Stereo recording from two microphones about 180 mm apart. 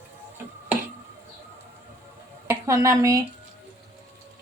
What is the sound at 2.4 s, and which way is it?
Speech, 15° right (ahead or behind).